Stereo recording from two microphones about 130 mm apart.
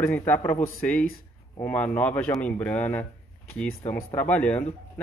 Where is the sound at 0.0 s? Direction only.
15° left (ahead or behind).